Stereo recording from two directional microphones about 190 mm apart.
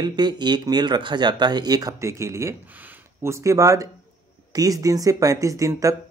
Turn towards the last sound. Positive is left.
turn(degrees=-15)  # may be behind; listen again after turning